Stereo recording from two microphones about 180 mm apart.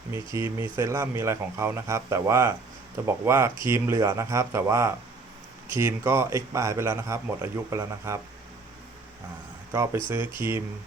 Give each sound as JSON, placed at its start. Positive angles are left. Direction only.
{"t": 0.3, "sound": "speech", "side_deg": -15}
{"t": 9.7, "sound": "speech", "side_deg": -15}